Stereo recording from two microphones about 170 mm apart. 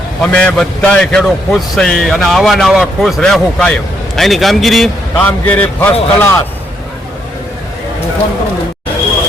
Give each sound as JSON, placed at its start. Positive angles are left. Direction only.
{"t": 0.2, "sound": "a man's voice", "side_deg": 5}